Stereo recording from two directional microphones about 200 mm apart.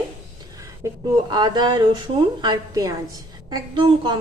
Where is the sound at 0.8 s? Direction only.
15° right (ahead or behind).